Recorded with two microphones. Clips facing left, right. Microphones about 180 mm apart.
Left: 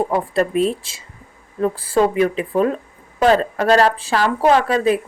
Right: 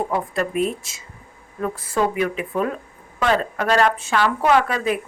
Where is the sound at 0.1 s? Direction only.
30° left (ahead or behind).